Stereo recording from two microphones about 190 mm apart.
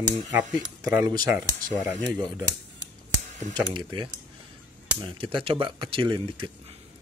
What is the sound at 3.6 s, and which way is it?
Speech, 25° right (ahead or behind).